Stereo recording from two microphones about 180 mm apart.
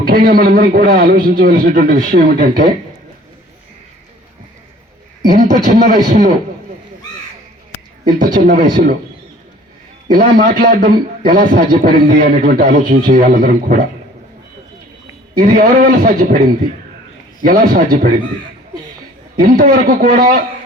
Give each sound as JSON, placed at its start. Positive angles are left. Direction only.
{"t": 0.0, "sound": "a man's voice", "side_deg": -50}
{"t": 5.2, "sound": "a man's voice", "side_deg": -45}
{"t": 8.0, "sound": "a man's voice", "side_deg": -45}
{"t": 10.1, "sound": "a man's voice", "side_deg": -50}
{"t": 15.4, "sound": "a man's voice", "side_deg": -50}
{"t": 19.4, "sound": "a man's voice", "side_deg": -50}